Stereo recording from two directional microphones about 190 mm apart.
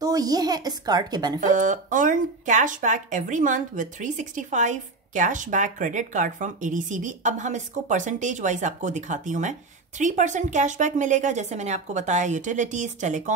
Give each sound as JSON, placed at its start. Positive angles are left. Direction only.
{"t": 0.0, "sound": "a woman's voice", "side_deg": -20}
{"t": 1.4, "sound": "speech", "side_deg": -40}